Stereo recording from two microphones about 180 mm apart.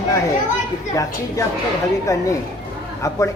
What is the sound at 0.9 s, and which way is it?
A woman's voice, 20° left (ahead or behind).